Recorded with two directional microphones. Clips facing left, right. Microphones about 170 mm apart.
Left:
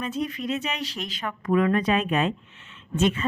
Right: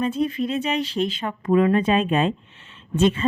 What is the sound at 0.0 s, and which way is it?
Speech, 30° right (ahead or behind).